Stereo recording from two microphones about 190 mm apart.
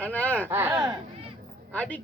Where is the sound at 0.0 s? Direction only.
10° left (ahead or behind).